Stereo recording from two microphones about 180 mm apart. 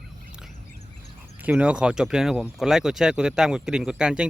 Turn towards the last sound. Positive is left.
turn(degrees=-5)  # may be behind; listen again after turning